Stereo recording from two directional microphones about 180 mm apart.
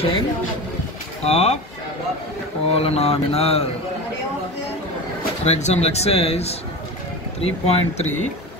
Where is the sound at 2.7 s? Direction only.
35° left (ahead or behind).